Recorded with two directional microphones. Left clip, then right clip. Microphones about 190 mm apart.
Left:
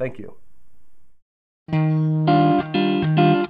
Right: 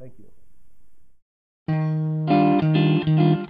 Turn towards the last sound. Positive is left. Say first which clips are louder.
# left 5 dB
turn(degrees=0)  # may be behind; listen again after turning